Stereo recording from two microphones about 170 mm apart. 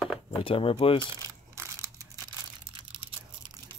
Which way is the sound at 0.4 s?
35° left (ahead or behind).